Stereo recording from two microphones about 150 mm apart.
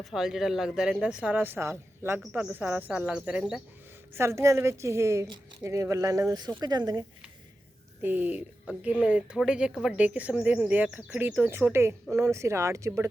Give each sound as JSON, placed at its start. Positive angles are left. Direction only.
{"t": 0.0, "sound": "speech", "side_deg": 0}
{"t": 4.1, "sound": "a woman's voice", "side_deg": -15}
{"t": 8.0, "sound": "a woman's voice", "side_deg": -10}